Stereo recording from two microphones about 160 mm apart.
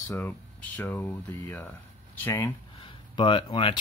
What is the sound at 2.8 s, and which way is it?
Speech, 30° left (ahead or behind).